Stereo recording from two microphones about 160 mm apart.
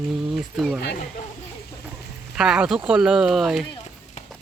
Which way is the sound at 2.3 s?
5° right (ahead or behind).